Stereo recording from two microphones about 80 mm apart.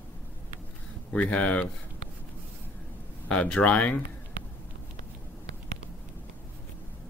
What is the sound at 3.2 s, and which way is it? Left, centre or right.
Speech, centre.